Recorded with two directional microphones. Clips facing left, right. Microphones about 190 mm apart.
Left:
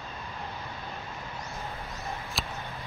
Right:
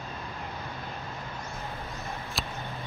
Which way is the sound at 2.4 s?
Centre (ahead or behind).